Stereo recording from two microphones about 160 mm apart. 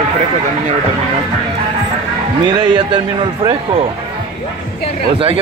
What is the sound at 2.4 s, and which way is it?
Speech, 30° right (ahead or behind).